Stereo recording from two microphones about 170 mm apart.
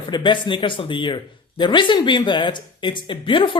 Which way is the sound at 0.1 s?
30° left (ahead or behind).